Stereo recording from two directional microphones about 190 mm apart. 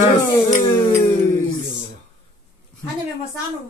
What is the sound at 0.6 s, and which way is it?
Speech, 25° left (ahead or behind).